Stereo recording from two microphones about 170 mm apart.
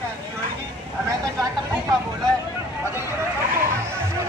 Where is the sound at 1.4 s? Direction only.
20° right (ahead or behind).